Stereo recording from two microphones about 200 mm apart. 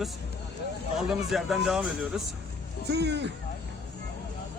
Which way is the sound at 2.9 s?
55° right (ahead or behind).